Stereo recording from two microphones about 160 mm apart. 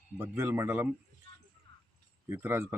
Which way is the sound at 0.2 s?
15° right (ahead or behind).